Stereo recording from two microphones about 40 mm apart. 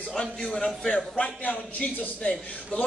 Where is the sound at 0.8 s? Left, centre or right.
Left.